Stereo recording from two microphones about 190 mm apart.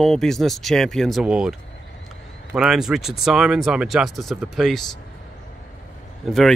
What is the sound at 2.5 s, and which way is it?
Speech, 5° right (ahead or behind).